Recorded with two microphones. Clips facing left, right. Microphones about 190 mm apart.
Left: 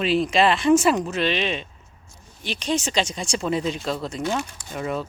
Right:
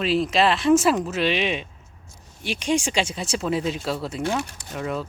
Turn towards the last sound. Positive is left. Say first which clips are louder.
# left 1 dB
turn(degrees=0)  # may be behind; listen again after turning